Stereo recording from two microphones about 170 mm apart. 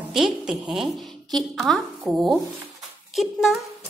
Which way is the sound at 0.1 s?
Centre (ahead or behind).